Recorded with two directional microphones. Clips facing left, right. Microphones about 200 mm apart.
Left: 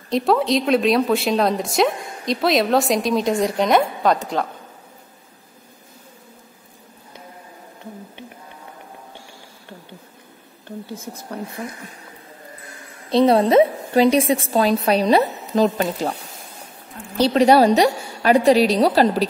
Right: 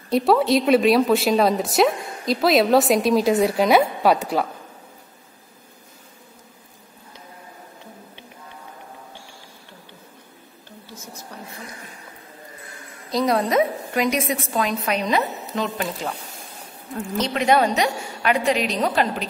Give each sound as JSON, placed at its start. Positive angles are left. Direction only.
{"t": 0.1, "sound": "a woman's voice", "side_deg": 0}
{"t": 13.1, "sound": "a woman's voice", "side_deg": 30}
{"t": 17.2, "sound": "a woman's voice", "side_deg": 35}